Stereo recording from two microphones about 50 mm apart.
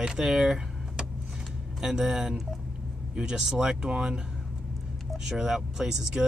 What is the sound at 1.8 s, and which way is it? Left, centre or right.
Speech, centre.